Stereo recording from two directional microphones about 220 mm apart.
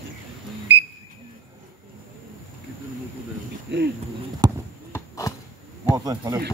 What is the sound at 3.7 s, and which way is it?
Speech, 50° right (ahead or behind).